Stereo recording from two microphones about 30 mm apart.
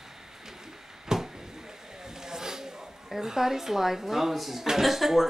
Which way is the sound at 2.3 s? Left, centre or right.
Centre.